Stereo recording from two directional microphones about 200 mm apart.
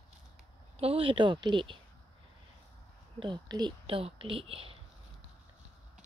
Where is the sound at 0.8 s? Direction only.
30° right (ahead or behind).